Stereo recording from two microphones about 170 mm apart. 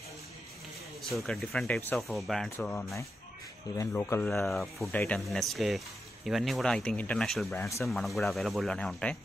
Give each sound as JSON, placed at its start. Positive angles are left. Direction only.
{"t": 1.0, "sound": "speech", "side_deg": 0}
{"t": 3.7, "sound": "speech", "side_deg": 15}
{"t": 4.5, "sound": "speech", "side_deg": 0}
{"t": 7.5, "sound": "speech", "side_deg": 15}
{"t": 7.8, "sound": "speech", "side_deg": 0}